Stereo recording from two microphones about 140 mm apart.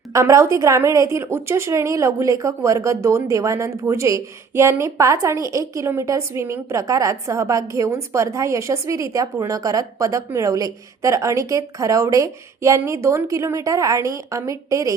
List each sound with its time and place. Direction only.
0.1 s speech: 20° right (ahead or behind)